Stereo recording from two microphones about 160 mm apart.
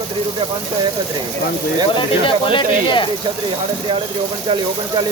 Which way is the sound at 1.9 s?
30° left (ahead or behind).